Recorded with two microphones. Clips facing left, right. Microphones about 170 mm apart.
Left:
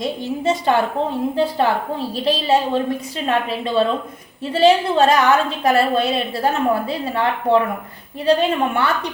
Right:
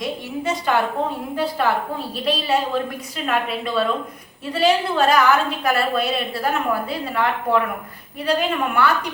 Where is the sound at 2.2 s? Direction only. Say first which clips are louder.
Left 3 dB; 25° left (ahead or behind).